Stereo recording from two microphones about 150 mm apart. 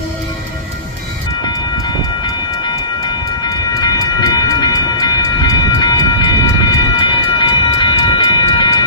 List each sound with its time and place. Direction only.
3.8 s train: 25° left (ahead or behind)